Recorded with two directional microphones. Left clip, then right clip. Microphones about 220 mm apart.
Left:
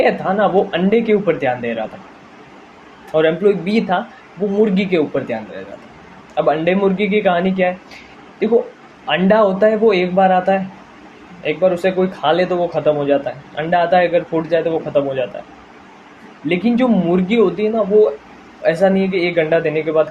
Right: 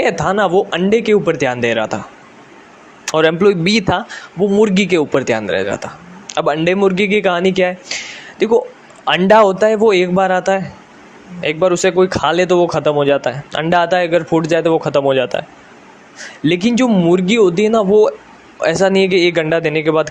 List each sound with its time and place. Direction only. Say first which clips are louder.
0.0 s speech: right 1 dB; 50° right (ahead or behind)
3.1 s speech: right 2 dB; 50° right (ahead or behind)